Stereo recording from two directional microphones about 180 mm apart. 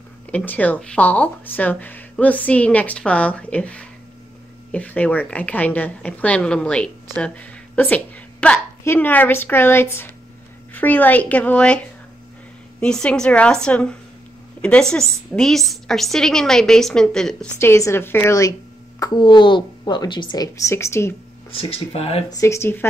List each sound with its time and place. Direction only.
0.3 s a woman's voice: 10° left (ahead or behind)
12.8 s a woman's voice: 5° left (ahead or behind)
17.6 s a woman's voice: 15° left (ahead or behind)
21.5 s speech: 30° left (ahead or behind)
22.3 s a woman's voice: 15° left (ahead or behind)